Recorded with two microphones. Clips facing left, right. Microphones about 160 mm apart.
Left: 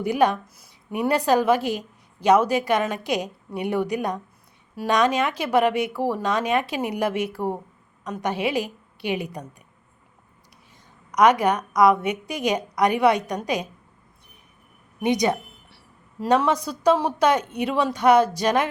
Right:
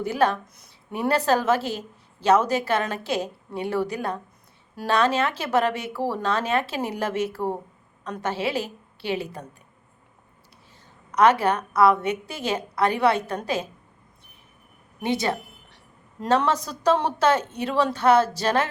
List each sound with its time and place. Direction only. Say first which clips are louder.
0.0 s a woman's voice: left 2 dB; 15° left (ahead or behind)
11.1 s a woman's voice: left 1 dB; 10° left (ahead or behind)
15.0 s a sound: left 4 dB; 15° left (ahead or behind)
16.2 s a woman's voice: left 2 dB; 10° left (ahead or behind)